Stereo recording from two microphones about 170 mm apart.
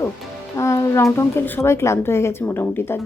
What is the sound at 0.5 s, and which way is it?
Speech, 20° left (ahead or behind).